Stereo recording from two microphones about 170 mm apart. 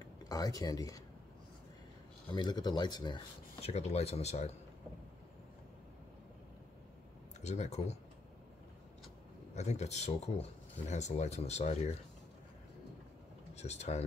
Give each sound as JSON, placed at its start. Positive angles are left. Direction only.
{"t": 0.0, "sound": "speech", "side_deg": 20}
{"t": 2.3, "sound": "speech", "side_deg": 25}
{"t": 3.6, "sound": "speech", "side_deg": 40}
{"t": 7.4, "sound": "speech", "side_deg": 40}
{"t": 9.6, "sound": "speech", "side_deg": 40}
{"t": 13.6, "sound": "speech", "side_deg": 40}